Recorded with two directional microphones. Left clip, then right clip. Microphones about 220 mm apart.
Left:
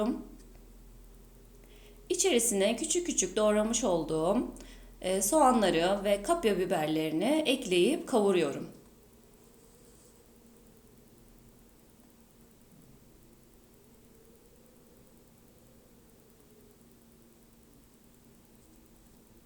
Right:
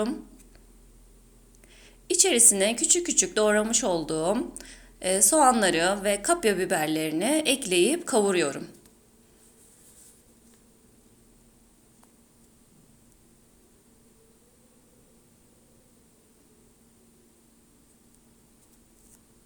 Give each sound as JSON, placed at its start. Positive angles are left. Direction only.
{"t": 1.7, "sound": "speech", "side_deg": -15}